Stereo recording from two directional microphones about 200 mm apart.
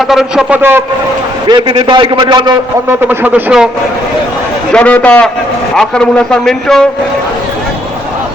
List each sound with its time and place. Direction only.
0.1 s a man's voice: centre (ahead or behind)
1.5 s a man's voice: 25° right (ahead or behind)
3.1 s a man's voice: 10° right (ahead or behind)
4.7 s a man's voice: 5° left (ahead or behind)